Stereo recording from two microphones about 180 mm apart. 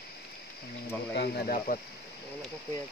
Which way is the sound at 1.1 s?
60° left (ahead or behind).